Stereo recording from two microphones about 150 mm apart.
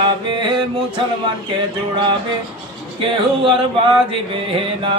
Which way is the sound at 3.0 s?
35° right (ahead or behind).